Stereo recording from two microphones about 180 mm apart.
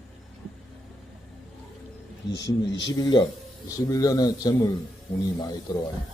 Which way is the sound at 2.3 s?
85° left.